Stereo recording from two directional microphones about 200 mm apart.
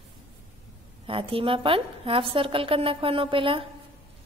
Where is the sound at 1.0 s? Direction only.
25° right (ahead or behind).